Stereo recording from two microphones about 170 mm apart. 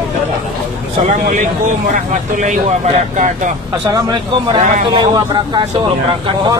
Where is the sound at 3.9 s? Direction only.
20° right (ahead or behind).